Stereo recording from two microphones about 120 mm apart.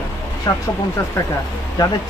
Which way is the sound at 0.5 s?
35° left (ahead or behind).